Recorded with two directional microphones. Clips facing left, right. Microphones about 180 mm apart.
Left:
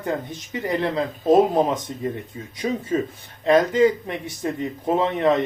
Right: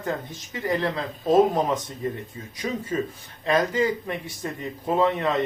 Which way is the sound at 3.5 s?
20° left (ahead or behind).